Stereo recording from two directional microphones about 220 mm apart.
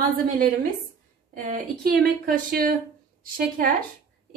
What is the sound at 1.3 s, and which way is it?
A woman's voice, 40° right (ahead or behind).